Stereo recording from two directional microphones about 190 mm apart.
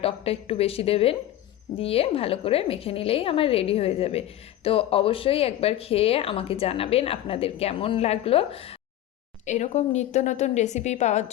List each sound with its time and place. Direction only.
0.0 s speech: 30° left (ahead or behind)